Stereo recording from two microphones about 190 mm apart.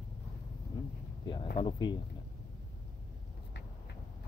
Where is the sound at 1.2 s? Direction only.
25° left (ahead or behind).